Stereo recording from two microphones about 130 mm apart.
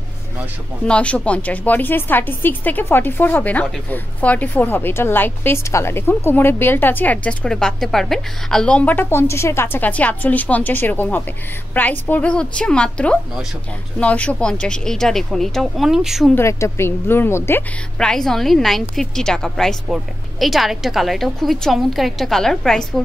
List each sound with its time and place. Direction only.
0.8 s a woman's voice: 10° left (ahead or behind)
16.3 s a woman's voice: 20° left (ahead or behind)
17.9 s a woman's voice: 5° left (ahead or behind)